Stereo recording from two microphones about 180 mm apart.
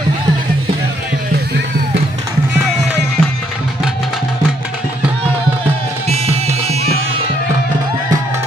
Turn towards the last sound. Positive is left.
turn(degrees=-35)  # may be behind; listen again after turning